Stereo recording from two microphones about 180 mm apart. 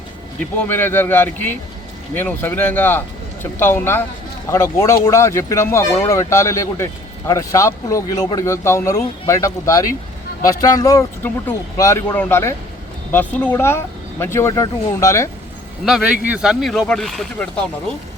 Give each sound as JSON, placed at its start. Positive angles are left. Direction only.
{"t": 0.5, "sound": "speech", "side_deg": 10}
{"t": 15.9, "sound": "speech", "side_deg": 0}